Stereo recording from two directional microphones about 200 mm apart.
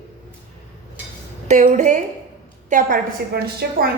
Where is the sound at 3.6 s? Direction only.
50° right (ahead or behind).